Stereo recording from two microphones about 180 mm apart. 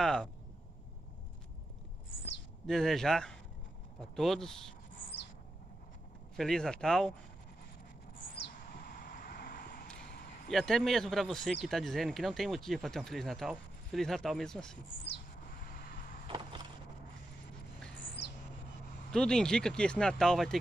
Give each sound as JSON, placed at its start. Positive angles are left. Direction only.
{"t": 0.0, "sound": "speech", "side_deg": 0}
{"t": 2.6, "sound": "speech", "side_deg": 0}
{"t": 6.3, "sound": "speech", "side_deg": 5}
{"t": 8.5, "sound": "vehicle", "side_deg": 55}
{"t": 10.0, "sound": "a sound", "side_deg": 60}
{"t": 10.5, "sound": "speech", "side_deg": 0}
{"t": 15.7, "sound": "vehicle", "side_deg": 55}
{"t": 19.1, "sound": "speech", "side_deg": 5}